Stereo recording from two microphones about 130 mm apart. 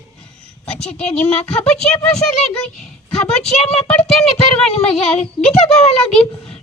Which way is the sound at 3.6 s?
55° left (ahead or behind).